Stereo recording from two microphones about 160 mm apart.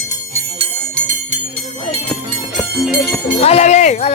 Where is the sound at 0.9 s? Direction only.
50° right (ahead or behind).